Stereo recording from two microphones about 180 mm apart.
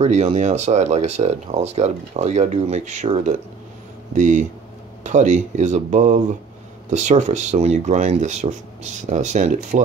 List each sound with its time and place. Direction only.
0.0 s speech: 40° right (ahead or behind)